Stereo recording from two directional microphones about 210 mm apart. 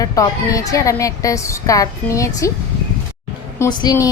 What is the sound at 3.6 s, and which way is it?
Speech, 20° left (ahead or behind).